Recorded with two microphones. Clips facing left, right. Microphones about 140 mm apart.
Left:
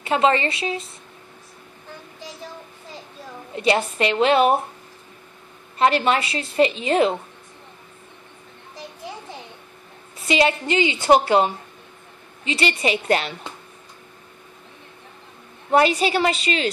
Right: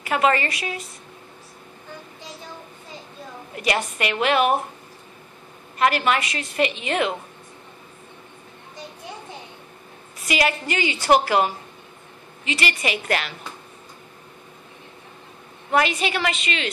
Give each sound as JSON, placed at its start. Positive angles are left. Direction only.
{"t": 0.0, "sound": "a woman's voice", "side_deg": 25}
{"t": 3.5, "sound": "a woman's voice", "side_deg": 25}
{"t": 5.8, "sound": "a woman's voice", "side_deg": 30}
{"t": 10.1, "sound": "a woman's voice", "side_deg": 25}
{"t": 15.7, "sound": "a woman's voice", "side_deg": 35}